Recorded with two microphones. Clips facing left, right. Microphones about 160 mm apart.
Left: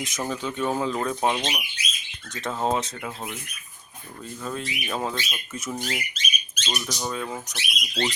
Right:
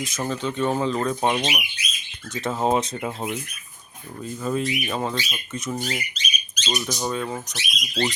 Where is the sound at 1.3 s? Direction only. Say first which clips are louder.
Right 3 dB; 10° right (ahead or behind).